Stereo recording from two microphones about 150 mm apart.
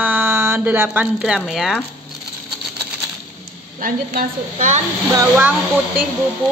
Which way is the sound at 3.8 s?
65° right (ahead or behind).